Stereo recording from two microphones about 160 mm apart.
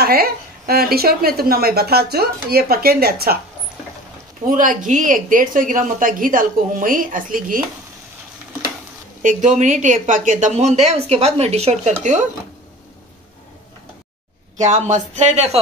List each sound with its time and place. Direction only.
0.0 s a woman's voice: 70° right (ahead or behind)
4.5 s a woman's voice: 55° right (ahead or behind)
9.2 s speech: 50° right (ahead or behind)
14.6 s speech: 50° right (ahead or behind)